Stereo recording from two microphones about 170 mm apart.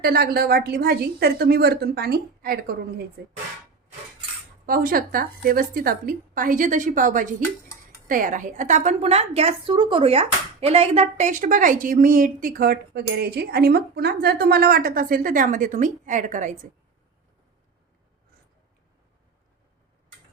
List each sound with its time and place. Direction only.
0.0 s a woman's voice: 65° right (ahead or behind)
3.2 s speech: 75° right (ahead or behind)
4.6 s a woman's voice: 55° right (ahead or behind)